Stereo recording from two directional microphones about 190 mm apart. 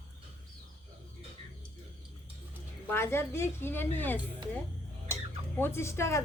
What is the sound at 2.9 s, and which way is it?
Speech, 10° left (ahead or behind).